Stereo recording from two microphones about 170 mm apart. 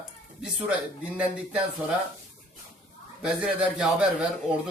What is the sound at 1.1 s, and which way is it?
Speech, 5° right (ahead or behind).